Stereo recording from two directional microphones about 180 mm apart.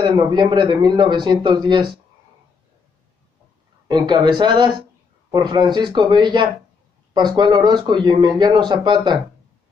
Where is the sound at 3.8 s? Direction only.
25° right (ahead or behind).